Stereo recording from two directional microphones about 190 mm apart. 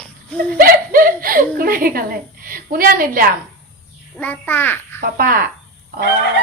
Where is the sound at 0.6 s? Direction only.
50° right (ahead or behind).